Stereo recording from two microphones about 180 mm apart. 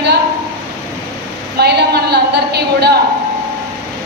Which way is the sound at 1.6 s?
65° right (ahead or behind).